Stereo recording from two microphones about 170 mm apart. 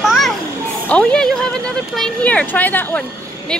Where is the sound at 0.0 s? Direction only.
Centre (ahead or behind).